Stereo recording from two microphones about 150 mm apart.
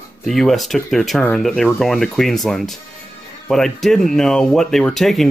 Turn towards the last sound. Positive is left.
turn(degrees=0)  # may be behind; listen again after turning